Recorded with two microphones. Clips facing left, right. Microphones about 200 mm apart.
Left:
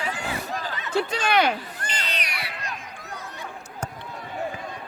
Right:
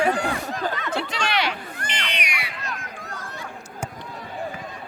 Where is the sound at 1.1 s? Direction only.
50° left (ahead or behind).